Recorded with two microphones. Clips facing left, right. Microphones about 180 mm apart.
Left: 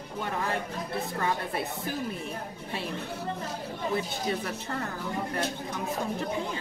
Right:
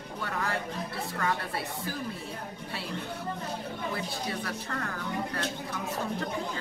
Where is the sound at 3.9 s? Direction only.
25° left (ahead or behind).